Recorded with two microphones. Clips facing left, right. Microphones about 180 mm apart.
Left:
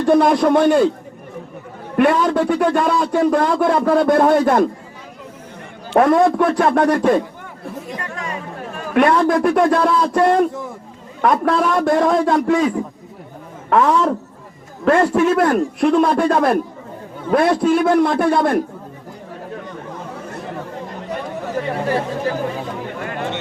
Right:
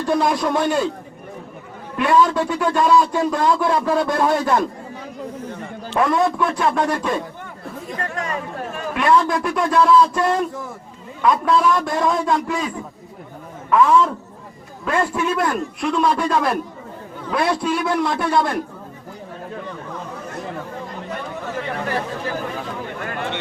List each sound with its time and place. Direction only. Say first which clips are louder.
0.0 s a man's voice: left 6 dB; 55° left (ahead or behind)
2.0 s a man's voice: left 2 dB; 55° left (ahead or behind)
5.9 s a man's voice: left 6 dB; 50° left (ahead or behind)
8.0 s speech: right 2 dB; 45° right (ahead or behind)
8.9 s a man's voice: left 4 dB; 55° left (ahead or behind)
21.4 s chatter: left 5 dB; 35° left (ahead or behind)